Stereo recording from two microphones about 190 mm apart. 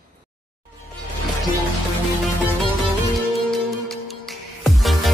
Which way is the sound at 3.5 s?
Centre (ahead or behind).